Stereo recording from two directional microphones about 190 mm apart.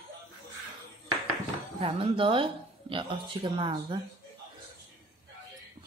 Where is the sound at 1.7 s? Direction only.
30° right (ahead or behind).